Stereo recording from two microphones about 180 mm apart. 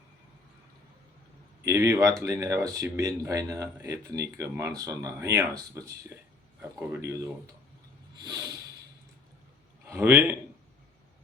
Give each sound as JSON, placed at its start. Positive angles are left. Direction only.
{"t": 1.6, "sound": "speech", "side_deg": -15}
{"t": 8.2, "sound": "a sound", "side_deg": -20}
{"t": 9.8, "sound": "speech", "side_deg": -15}